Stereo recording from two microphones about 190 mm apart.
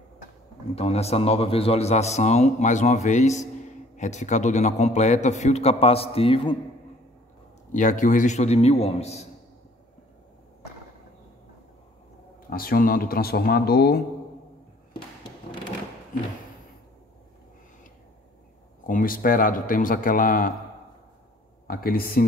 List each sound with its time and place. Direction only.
0.7 s a man's voice: 30° left (ahead or behind)
7.7 s a man's voice: 40° left (ahead or behind)
12.4 s a man's voice: 50° left (ahead or behind)
18.9 s a man's voice: 45° left (ahead or behind)
21.6 s a man's voice: 50° left (ahead or behind)